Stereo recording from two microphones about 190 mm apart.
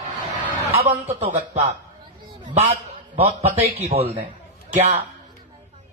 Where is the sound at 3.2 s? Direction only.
35° right (ahead or behind).